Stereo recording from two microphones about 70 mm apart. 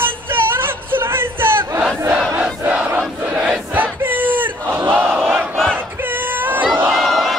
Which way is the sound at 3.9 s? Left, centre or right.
Right.